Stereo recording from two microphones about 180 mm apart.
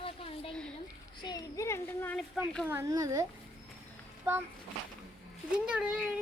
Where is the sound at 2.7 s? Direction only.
15° right (ahead or behind).